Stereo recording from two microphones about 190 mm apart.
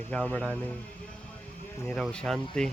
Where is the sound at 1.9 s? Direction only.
5° left (ahead or behind).